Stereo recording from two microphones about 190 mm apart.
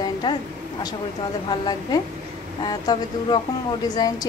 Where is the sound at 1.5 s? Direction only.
20° left (ahead or behind).